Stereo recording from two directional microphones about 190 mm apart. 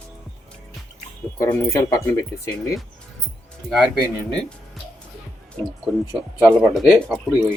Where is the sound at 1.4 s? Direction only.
15° left (ahead or behind).